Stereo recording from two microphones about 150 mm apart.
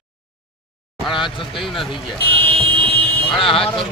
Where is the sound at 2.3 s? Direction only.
40° right (ahead or behind).